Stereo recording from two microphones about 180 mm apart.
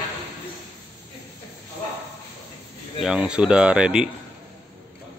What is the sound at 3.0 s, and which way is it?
Speech, 5° right (ahead or behind).